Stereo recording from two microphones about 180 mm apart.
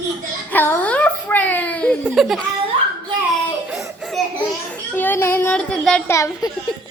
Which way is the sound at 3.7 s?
5° right (ahead or behind).